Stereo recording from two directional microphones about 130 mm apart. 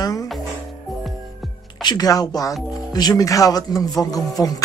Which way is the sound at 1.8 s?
30° left (ahead or behind).